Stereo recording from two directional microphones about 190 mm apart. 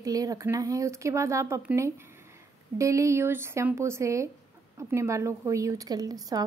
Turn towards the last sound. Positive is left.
turn(degrees=-20)  # may be behind; listen again after turning